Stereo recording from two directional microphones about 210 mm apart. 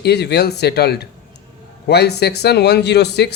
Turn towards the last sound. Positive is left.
turn(degrees=55)  # may be behind; listen again after turning